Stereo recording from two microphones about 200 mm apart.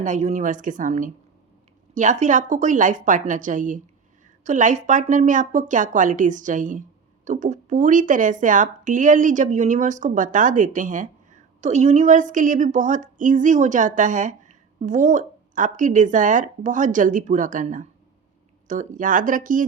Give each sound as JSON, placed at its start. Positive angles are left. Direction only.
{"t": 0.0, "sound": "speech", "side_deg": -35}